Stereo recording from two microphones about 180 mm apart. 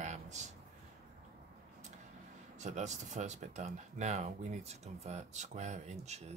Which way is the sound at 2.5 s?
40° right (ahead or behind).